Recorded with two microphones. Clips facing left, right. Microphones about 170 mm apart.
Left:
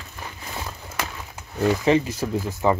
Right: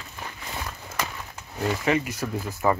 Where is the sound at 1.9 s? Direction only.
30° left (ahead or behind).